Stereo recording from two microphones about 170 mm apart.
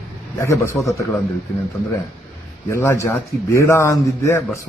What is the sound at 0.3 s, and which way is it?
Speech, 15° left (ahead or behind).